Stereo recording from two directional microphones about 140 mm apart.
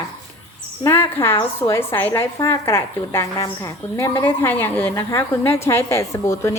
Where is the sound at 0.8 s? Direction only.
15° left (ahead or behind).